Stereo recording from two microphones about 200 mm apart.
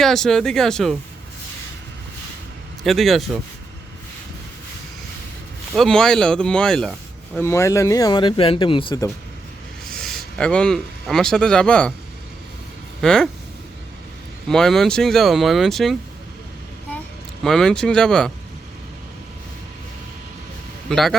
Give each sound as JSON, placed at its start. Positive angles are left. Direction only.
{"t": 0.0, "sound": "speech", "side_deg": 0}
{"t": 2.8, "sound": "speech", "side_deg": 0}
{"t": 5.7, "sound": "speech", "side_deg": 0}
{"t": 7.3, "sound": "speech", "side_deg": 15}
{"t": 10.0, "sound": "speech", "side_deg": 0}
{"t": 13.0, "sound": "speech", "side_deg": 5}
{"t": 14.4, "sound": "speech", "side_deg": 5}
{"t": 17.4, "sound": "speech", "side_deg": 0}
{"t": 20.9, "sound": "speech", "side_deg": 0}